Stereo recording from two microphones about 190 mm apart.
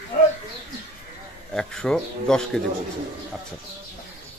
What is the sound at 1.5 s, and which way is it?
Speech, 5° left (ahead or behind).